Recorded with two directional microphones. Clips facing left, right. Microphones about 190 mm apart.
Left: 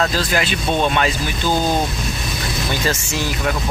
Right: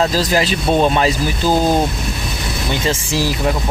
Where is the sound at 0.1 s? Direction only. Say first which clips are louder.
Right 4 dB; 35° right (ahead or behind).